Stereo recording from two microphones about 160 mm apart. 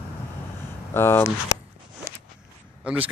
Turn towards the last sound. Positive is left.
turn(degrees=-5)  # may be behind; listen again after turning